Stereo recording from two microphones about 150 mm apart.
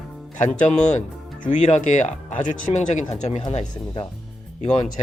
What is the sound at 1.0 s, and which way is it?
Speech, 55° left (ahead or behind).